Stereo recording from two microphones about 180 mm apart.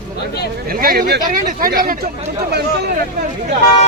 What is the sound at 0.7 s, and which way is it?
Speech, 55° right (ahead or behind).